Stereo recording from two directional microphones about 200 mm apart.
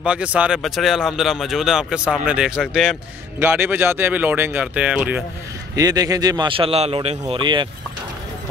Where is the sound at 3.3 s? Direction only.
10° right (ahead or behind).